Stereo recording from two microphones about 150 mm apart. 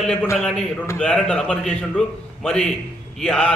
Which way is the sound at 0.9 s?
5° left (ahead or behind).